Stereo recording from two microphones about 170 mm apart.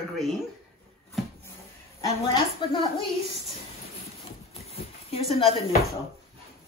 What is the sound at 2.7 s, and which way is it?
Speech, 30° left (ahead or behind).